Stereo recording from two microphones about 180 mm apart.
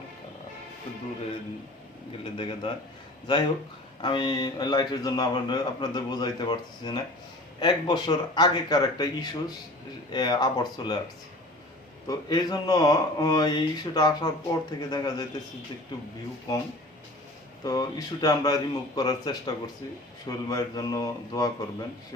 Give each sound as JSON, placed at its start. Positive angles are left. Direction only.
{"t": 2.4, "sound": "speech", "side_deg": 30}
{"t": 12.0, "sound": "speech", "side_deg": 20}
{"t": 17.6, "sound": "speech", "side_deg": 20}